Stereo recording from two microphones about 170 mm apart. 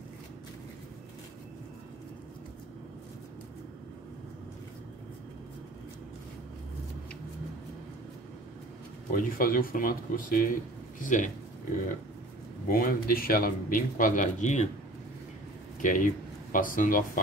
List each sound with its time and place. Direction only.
9.1 s speech: 55° left (ahead or behind)
12.6 s speech: 60° left (ahead or behind)
15.8 s speech: 50° left (ahead or behind)